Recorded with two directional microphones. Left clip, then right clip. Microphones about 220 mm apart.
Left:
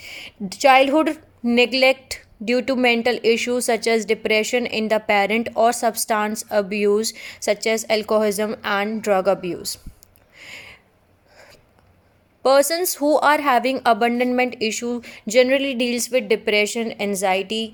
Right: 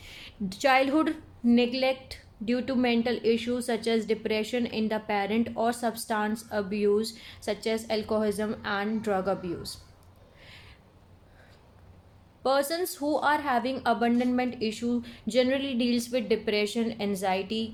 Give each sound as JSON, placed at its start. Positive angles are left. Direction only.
{"t": 0.0, "sound": "a woman's voice", "side_deg": 25}
{"t": 10.3, "sound": "a sound", "side_deg": 40}
{"t": 12.4, "sound": "a woman's voice", "side_deg": 35}